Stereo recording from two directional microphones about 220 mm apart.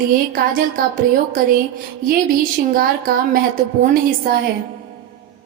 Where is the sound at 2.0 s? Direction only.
40° right (ahead or behind).